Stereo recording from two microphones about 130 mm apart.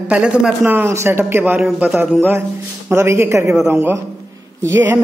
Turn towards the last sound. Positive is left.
turn(degrees=-15)  # may be behind; listen again after turning